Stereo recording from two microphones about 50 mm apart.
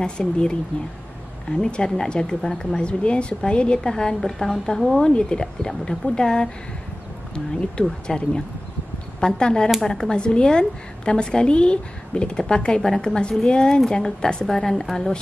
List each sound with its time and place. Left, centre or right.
0.0 s a woman's voice: centre
8.1 s a woman's voice: centre
12.8 s a woman's voice: centre
13.3 s a woman's voice: centre